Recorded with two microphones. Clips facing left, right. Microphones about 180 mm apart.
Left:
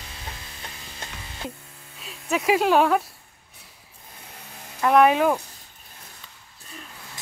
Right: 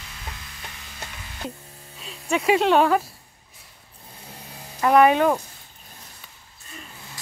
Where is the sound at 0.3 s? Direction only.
30° left (ahead or behind).